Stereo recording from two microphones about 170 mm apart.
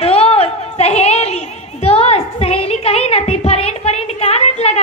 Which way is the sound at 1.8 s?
35° left (ahead or behind).